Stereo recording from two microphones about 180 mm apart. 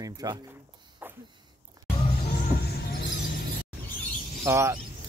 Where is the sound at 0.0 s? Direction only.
20° right (ahead or behind).